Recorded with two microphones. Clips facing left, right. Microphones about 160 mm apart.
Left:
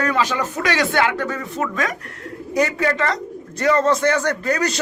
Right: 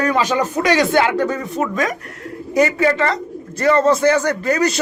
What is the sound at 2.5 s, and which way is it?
A man's voice, 5° right (ahead or behind).